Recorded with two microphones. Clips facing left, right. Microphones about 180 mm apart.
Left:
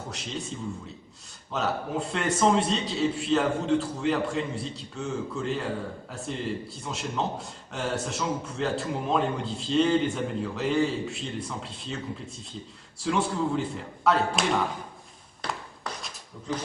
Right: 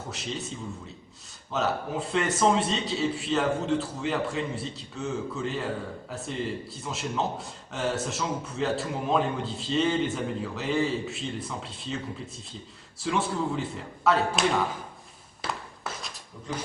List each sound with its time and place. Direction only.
0.1 s a man's voice: centre (ahead or behind)
1.5 s a man's voice: centre (ahead or behind)
13.0 s a man's voice: centre (ahead or behind)
15.4 s a sound: centre (ahead or behind)